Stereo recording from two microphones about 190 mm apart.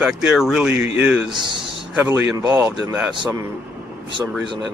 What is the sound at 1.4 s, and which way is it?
Speech, 25° right (ahead or behind).